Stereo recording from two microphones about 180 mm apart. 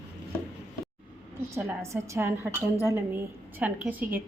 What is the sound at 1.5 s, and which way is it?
A woman's voice, 15° right (ahead or behind).